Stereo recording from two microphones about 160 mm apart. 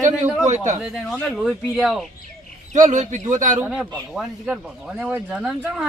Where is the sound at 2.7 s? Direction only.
50° right (ahead or behind).